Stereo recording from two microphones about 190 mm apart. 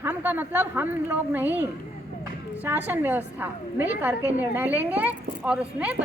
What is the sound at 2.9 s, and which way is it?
A woman's voice, 10° right (ahead or behind).